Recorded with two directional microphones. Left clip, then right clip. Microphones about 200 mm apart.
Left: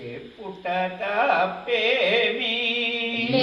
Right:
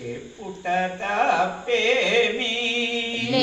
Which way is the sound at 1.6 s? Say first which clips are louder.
Right 1 dB; 5° right (ahead or behind).